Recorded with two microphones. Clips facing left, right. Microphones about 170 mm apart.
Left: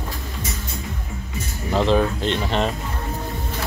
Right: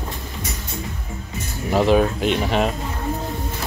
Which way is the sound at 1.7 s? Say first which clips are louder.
Right 2 dB; 10° right (ahead or behind).